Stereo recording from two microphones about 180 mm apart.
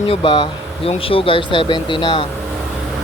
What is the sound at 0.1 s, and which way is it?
Speech, 30° left (ahead or behind).